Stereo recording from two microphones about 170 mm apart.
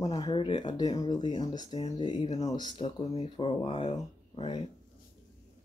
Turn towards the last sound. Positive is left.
turn(degrees=35)  # may be behind; listen again after turning